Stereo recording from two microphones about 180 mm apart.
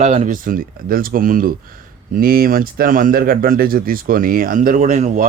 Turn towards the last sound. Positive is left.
turn(degrees=-40)  # may be behind; listen again after turning